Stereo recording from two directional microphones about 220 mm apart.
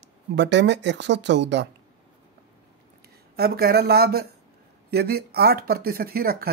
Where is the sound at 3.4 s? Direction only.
45° right (ahead or behind).